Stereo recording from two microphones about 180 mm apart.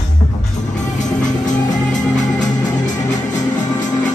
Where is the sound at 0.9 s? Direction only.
45° left (ahead or behind).